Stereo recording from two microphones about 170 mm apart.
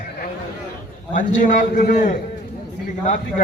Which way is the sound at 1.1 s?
50° left (ahead or behind).